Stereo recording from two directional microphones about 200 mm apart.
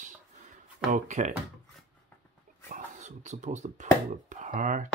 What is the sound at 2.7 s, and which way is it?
Speech, 35° right (ahead or behind).